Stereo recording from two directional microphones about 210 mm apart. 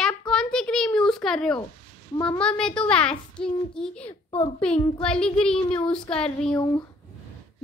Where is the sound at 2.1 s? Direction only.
20° left (ahead or behind).